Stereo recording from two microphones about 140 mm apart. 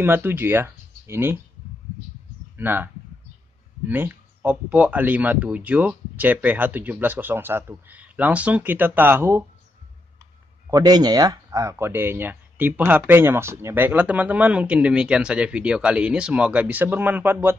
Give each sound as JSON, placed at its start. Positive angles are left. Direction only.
{"t": 0.0, "sound": "speech", "side_deg": -15}
{"t": 2.5, "sound": "speech", "side_deg": -15}
{"t": 10.7, "sound": "speech", "side_deg": -30}